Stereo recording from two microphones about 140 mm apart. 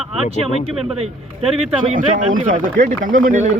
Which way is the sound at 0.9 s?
50° right (ahead or behind).